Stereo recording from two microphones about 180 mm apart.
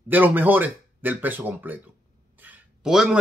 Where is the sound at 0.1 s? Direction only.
10° right (ahead or behind).